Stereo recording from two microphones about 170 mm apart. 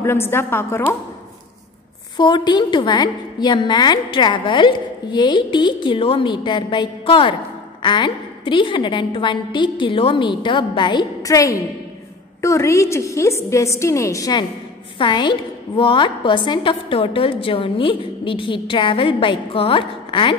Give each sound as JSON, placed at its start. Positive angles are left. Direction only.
{"t": 0.0, "sound": "a woman's voice", "side_deg": 15}
{"t": 2.1, "sound": "a woman's voice", "side_deg": 25}